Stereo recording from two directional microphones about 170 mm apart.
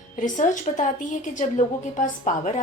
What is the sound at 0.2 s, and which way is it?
A woman's voice, 50° left (ahead or behind).